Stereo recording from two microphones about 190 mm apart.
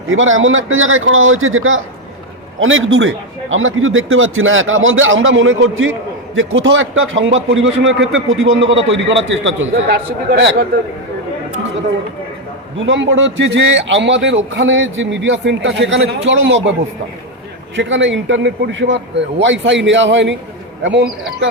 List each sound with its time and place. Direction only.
0.1 s a man's voice: 90° right; by 8.0 s 75° right (ahead or behind)
8.1 s a man's voice: 90° right; by 10.7 s 60° right (ahead or behind)
12.8 s a man's voice: 80° right
17.7 s a man's voice: 75° right (ahead or behind)